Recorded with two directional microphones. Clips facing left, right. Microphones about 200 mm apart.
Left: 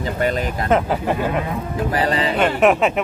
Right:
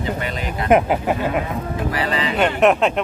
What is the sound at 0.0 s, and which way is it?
Speech, 45° left (ahead or behind).